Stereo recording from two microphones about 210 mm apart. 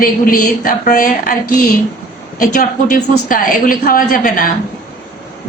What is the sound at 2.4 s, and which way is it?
Speech, 40° left (ahead or behind).